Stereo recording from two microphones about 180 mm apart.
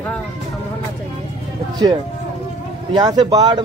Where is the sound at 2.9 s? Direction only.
20° right (ahead or behind).